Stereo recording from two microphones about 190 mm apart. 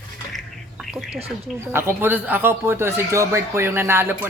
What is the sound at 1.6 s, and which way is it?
Speech, 10° right (ahead or behind).